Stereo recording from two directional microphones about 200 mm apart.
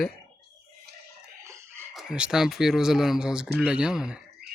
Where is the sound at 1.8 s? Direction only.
5° right (ahead or behind).